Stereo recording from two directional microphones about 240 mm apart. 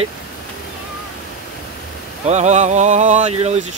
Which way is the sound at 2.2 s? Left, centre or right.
Right.